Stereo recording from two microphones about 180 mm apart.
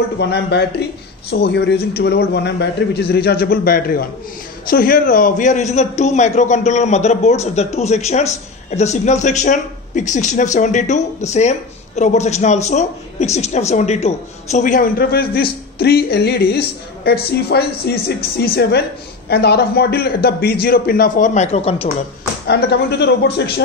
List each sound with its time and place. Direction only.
0.2 s a woman's voice: 70° left (ahead or behind); by 21.8 s 35° left (ahead or behind)
22.5 s speech: 65° left (ahead or behind)